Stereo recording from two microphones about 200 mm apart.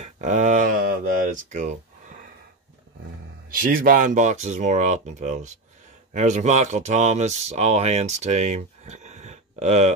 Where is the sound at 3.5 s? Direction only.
45° right (ahead or behind).